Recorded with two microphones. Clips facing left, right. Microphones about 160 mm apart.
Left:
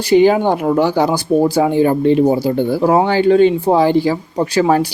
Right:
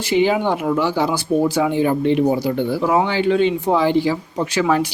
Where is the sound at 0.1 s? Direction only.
45° left (ahead or behind).